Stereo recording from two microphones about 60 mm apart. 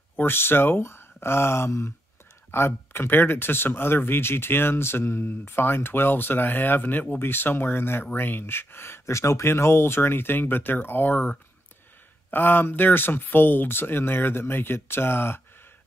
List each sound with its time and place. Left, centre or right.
0.2 s speech: left